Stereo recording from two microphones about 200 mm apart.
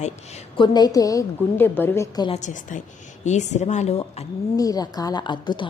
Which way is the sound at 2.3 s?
35° left (ahead or behind).